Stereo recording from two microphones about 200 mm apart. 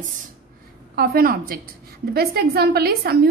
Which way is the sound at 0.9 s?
50° right (ahead or behind).